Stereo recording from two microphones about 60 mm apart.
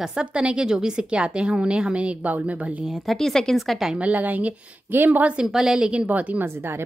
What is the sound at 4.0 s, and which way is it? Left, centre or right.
A woman's voice, right.